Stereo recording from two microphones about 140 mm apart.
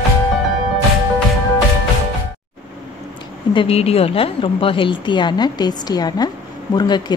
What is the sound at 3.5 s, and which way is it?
A woman's voice, 40° left (ahead or behind).